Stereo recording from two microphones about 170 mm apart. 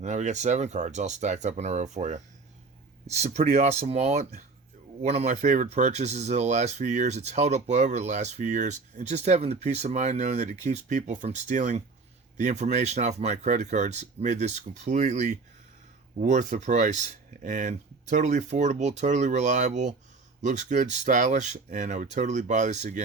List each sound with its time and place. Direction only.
0.0 s speech: 45° right (ahead or behind)